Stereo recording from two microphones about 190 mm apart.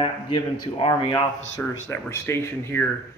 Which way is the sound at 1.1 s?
15° left (ahead or behind).